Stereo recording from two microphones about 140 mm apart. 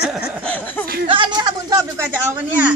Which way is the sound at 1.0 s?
35° right (ahead or behind).